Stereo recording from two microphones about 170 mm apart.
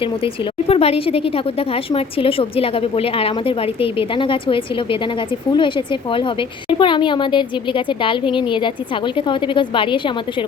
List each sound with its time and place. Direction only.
0.7 s a woman's voice: 35° left (ahead or behind)